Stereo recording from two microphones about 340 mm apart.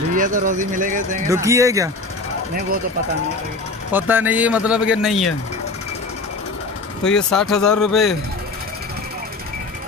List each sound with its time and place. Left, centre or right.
0.1 s speech: right
1.3 s speech: centre
3.9 s speech: centre
7.1 s speech: centre